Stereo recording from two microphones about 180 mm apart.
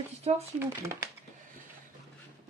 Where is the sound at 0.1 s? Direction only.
40° right (ahead or behind).